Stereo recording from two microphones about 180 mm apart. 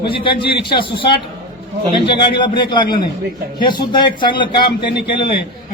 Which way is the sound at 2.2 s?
25° left (ahead or behind).